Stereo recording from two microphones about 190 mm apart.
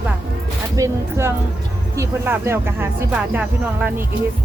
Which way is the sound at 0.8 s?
15° right (ahead or behind).